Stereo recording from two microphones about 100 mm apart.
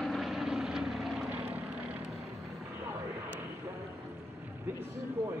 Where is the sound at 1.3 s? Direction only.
15° right (ahead or behind).